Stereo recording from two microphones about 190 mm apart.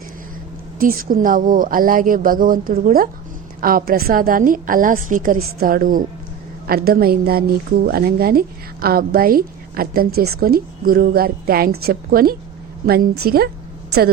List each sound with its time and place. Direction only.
0.8 s a woman's voice: 50° right (ahead or behind)